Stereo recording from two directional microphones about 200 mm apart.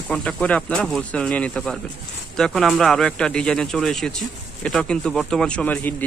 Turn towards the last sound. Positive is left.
turn(degrees=5)  # may be behind; listen again after turning